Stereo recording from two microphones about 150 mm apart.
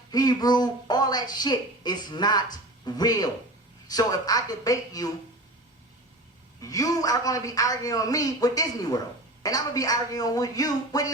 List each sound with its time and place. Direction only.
0.1 s a man's voice: 25° left (ahead or behind)
6.6 s a man's voice: 25° left (ahead or behind)